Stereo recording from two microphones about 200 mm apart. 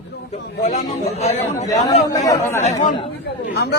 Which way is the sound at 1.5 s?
15° left (ahead or behind).